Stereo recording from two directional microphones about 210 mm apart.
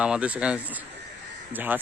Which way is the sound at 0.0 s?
5° right (ahead or behind).